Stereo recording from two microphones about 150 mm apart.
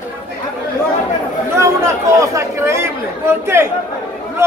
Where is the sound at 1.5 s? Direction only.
20° right (ahead or behind).